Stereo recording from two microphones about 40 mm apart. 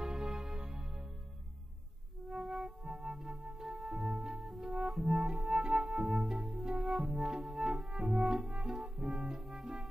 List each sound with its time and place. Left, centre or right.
0.0 s music: centre
2.3 s music: centre
3.8 s music: centre
7.4 s music: centre
8.9 s music: centre